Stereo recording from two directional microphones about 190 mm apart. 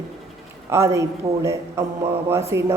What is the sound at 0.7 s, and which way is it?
A woman's voice, 15° right (ahead or behind).